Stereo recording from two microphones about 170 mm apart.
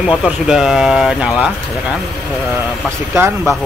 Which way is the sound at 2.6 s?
15° right (ahead or behind).